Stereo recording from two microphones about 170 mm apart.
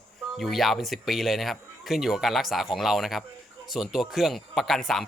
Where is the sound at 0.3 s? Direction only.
Centre (ahead or behind).